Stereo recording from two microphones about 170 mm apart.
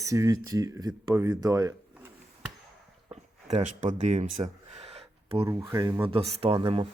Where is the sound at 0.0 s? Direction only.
20° right (ahead or behind).